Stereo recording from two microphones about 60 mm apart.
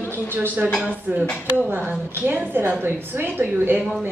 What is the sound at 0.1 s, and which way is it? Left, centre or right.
A woman's voice, right.